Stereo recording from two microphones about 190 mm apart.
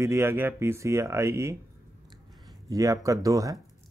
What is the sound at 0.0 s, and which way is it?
Speech, 15° right (ahead or behind).